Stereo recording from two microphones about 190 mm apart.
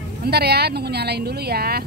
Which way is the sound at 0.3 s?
55° right (ahead or behind).